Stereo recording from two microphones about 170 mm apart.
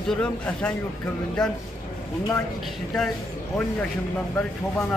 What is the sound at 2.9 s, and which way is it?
Speech, 5° left (ahead or behind).